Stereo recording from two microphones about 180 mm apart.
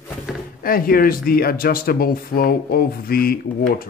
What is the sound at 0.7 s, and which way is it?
Speech, 55° left (ahead or behind).